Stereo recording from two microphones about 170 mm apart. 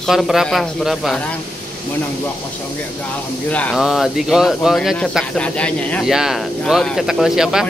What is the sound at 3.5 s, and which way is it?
Speech, 5° left (ahead or behind).